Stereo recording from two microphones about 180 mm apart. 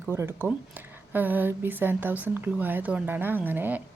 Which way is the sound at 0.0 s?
15° right (ahead or behind).